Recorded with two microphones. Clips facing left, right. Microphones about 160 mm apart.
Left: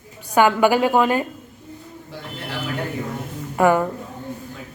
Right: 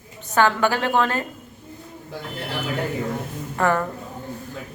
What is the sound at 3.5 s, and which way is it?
Speech, 15° left (ahead or behind).